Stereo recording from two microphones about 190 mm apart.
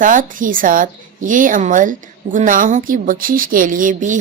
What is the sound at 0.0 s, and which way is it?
A woman's voice, 45° right (ahead or behind).